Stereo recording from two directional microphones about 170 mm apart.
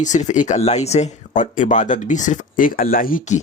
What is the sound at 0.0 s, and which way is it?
Speech, 45° left (ahead or behind).